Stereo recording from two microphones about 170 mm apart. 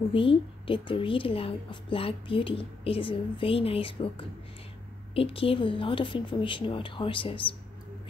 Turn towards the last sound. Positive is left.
turn(degrees=30)  # may be behind; listen again after turning